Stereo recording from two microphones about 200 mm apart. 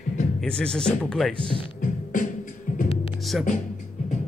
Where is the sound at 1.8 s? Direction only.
40° left (ahead or behind).